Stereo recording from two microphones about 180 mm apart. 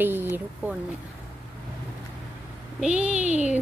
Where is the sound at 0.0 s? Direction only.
10° right (ahead or behind).